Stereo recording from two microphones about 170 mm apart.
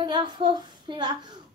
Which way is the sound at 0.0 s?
25° right (ahead or behind).